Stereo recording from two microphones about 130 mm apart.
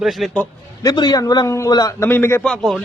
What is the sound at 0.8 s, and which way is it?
A man's voice, 30° left (ahead or behind).